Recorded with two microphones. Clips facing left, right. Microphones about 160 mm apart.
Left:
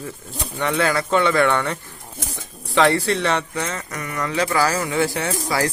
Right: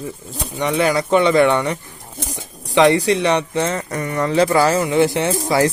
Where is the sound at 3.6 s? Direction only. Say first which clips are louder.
Right 7 dB; 30° right (ahead or behind).